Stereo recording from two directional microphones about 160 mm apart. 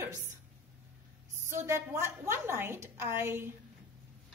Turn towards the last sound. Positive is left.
turn(degrees=-15)  # may be behind; listen again after turning